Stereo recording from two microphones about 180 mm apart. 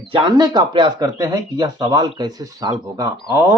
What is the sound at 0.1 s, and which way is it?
Speech, 25° right (ahead or behind).